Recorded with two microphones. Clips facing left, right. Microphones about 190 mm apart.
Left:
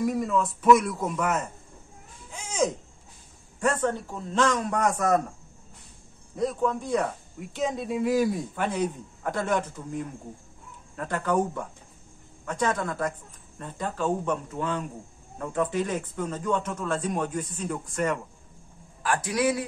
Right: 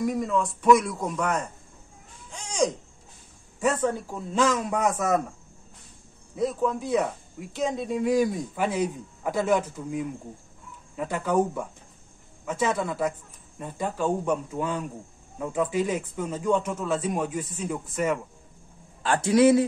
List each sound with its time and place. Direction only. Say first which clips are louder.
0.0 s speech: even; centre (ahead or behind)
2.3 s a sound: right 1 dB; 5° left (ahead or behind)
3.5 s speech: right 1 dB; 5° right (ahead or behind)
6.3 s speech: right 1 dB; centre (ahead or behind)
19.0 s a man's voice: right 6 dB; 25° right (ahead or behind)